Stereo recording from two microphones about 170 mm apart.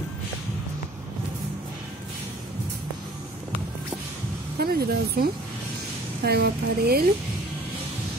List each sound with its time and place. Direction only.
4.6 s speech: 65° right (ahead or behind)